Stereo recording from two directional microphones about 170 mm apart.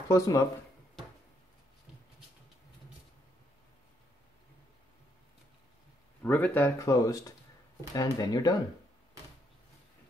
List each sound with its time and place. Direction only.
0.1 s speech: 20° left (ahead or behind)
6.2 s speech: 10° left (ahead or behind)